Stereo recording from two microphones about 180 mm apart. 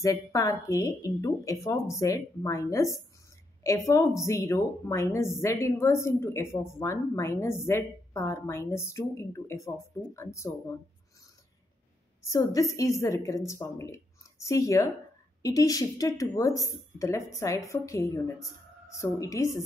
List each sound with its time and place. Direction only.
0.0 s speech: 20° left (ahead or behind)
12.3 s a woman's voice: 20° left (ahead or behind)